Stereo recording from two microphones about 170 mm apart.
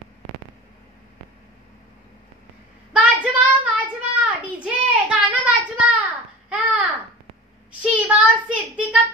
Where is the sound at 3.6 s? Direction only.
10° right (ahead or behind).